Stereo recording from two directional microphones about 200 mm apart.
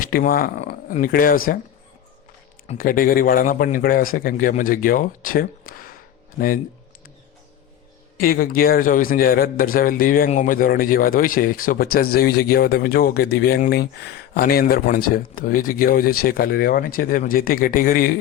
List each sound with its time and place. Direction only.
0.0 s speech: 45° left (ahead or behind)
2.6 s a man's voice: 45° left (ahead or behind)
8.2 s a man's voice: 45° left (ahead or behind)